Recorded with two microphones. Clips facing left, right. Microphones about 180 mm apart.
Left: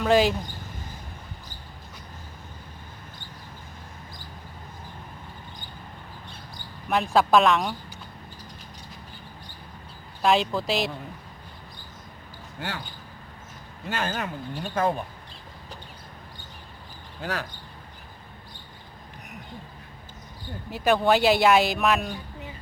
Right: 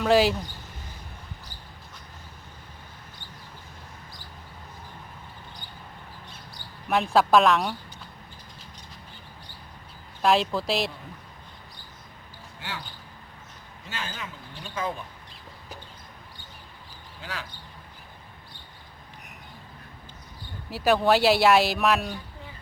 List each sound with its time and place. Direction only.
0.0 s speech: centre (ahead or behind)
6.8 s speech: centre (ahead or behind)
10.2 s speech: centre (ahead or behind)
12.5 s speech: 50° left (ahead or behind)
13.8 s speech: 55° left (ahead or behind)
17.2 s speech: 45° left (ahead or behind)
20.7 s speech: centre (ahead or behind)